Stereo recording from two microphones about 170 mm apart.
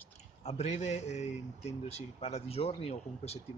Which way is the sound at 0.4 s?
40° left (ahead or behind).